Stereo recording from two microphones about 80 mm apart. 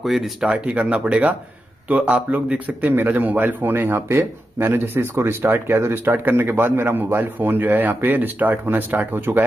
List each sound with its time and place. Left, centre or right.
0.0 s a man's voice: centre; by 9.4 s right